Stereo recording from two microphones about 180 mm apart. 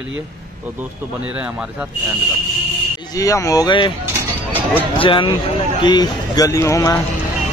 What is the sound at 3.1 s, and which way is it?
Speech, 20° left (ahead or behind).